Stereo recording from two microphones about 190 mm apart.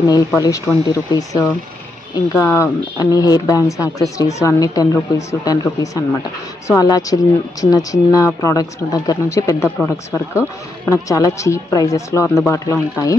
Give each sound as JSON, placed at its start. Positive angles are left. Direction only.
{"t": 0.3, "sound": "speech", "side_deg": 15}